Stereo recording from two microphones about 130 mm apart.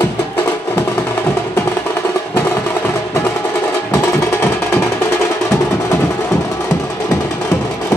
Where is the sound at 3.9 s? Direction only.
20° left (ahead or behind).